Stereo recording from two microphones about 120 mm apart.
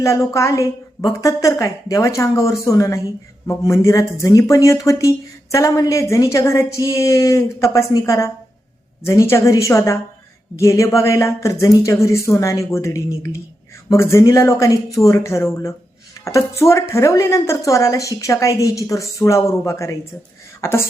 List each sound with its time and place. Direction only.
0.0 s speech: 25° left (ahead or behind)